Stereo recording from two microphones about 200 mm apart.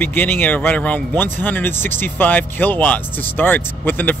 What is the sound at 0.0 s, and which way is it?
A man's voice, 10° left (ahead or behind).